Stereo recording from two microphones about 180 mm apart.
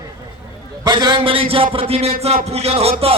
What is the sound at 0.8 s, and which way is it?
A man's voice, 25° right (ahead or behind).